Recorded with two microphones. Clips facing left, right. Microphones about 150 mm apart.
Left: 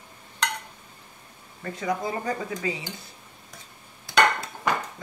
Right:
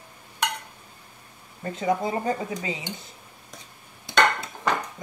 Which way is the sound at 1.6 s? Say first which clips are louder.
Right 3 dB; 25° right (ahead or behind).